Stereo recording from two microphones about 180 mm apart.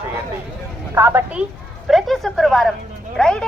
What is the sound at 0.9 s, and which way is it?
A woman's voice, 15° right (ahead or behind).